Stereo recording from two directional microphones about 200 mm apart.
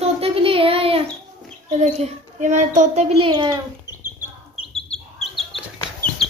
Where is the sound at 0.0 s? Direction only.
30° right (ahead or behind).